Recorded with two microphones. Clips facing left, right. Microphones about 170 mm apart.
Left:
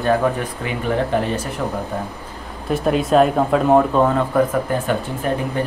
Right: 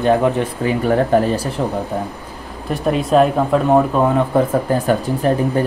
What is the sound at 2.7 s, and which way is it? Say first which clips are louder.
Speech: right 1 dB; centre (ahead or behind).